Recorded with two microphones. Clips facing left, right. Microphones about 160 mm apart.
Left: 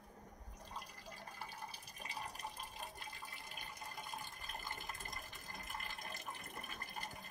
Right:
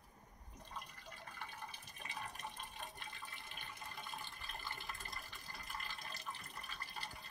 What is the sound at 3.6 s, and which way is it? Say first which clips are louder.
Water: left 1 dB; 40° left (ahead or behind).